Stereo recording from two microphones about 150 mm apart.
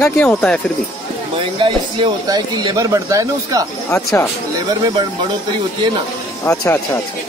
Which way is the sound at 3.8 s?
15° left (ahead or behind).